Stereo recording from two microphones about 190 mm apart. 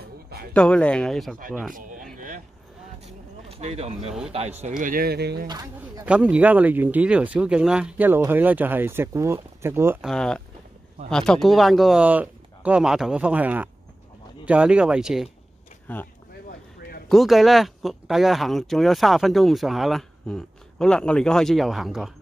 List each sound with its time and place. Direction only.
0.0 s a sound: 55° right (ahead or behind)
0.5 s speech: 5° left (ahead or behind)
1.7 s speech: 45° right (ahead or behind)
2.1 s a sound: 45° right (ahead or behind)
4.3 s speech: 35° right (ahead or behind); by 5.5 s 60° right (ahead or behind)
5.5 s speech: 20° right (ahead or behind)
6.0 s speech: 5° right (ahead or behind)
10.0 s speech: 5° left (ahead or behind)
15.9 s speech: 10° left (ahead or behind)
17.1 s speech: centre (ahead or behind)